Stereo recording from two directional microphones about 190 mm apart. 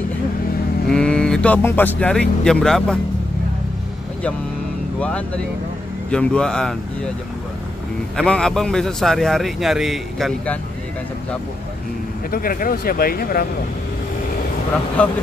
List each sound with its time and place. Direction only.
0.8 s speech: 5° left (ahead or behind)
5.0 s a man's voice: 5° left (ahead or behind)
8.2 s a man's voice: 5° left (ahead or behind)
12.3 s speech: 50° left (ahead or behind)
15.0 s speech: 5° left (ahead or behind)